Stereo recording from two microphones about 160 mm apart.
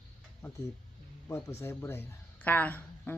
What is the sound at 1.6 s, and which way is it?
Speech, 15° left (ahead or behind).